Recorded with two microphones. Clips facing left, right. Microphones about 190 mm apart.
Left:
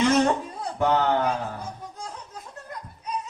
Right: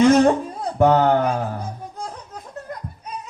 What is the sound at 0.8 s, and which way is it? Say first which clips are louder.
Speech: right 6 dB; 50° right (ahead or behind).